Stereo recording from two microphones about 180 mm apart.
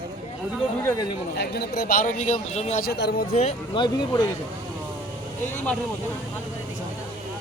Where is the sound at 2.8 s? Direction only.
65° left (ahead or behind).